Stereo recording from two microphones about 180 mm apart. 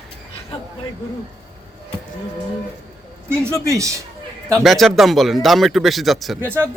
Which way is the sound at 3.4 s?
15° right (ahead or behind).